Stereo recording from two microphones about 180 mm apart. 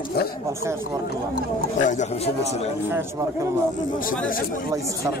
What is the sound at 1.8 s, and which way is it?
Speech, 45° left (ahead or behind).